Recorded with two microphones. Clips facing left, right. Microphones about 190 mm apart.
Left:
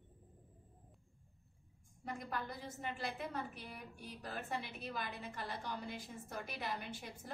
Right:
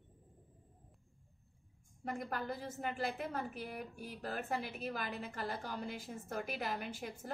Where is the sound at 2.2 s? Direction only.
55° right (ahead or behind).